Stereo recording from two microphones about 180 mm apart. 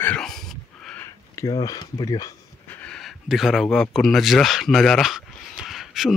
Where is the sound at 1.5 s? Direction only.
20° left (ahead or behind).